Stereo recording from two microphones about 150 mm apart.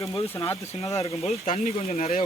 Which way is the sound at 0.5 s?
20° left (ahead or behind).